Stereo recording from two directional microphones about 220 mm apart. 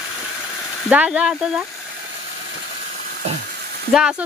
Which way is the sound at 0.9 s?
5° right (ahead or behind).